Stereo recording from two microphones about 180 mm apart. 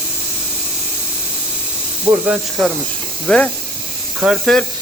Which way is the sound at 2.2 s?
5° right (ahead or behind).